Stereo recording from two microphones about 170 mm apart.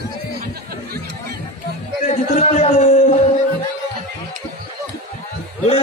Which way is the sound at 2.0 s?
45° left (ahead or behind).